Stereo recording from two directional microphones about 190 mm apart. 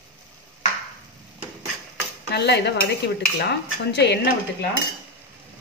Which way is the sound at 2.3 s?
60° left (ahead or behind).